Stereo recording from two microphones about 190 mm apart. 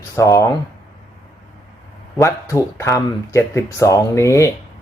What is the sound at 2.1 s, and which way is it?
Speech, 15° left (ahead or behind).